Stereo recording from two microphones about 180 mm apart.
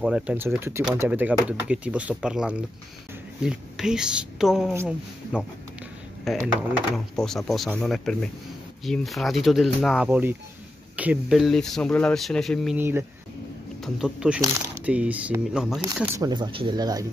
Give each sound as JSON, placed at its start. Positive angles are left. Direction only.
{"t": 0.0, "sound": "speech", "side_deg": -5}
{"t": 12.7, "sound": "speech", "side_deg": -10}
{"t": 15.8, "sound": "speech", "side_deg": -15}